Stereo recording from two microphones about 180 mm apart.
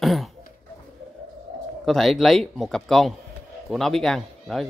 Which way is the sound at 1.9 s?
Centre (ahead or behind).